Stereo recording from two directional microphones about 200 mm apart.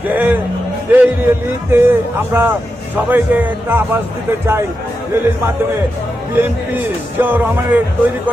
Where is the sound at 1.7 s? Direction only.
10° right (ahead or behind).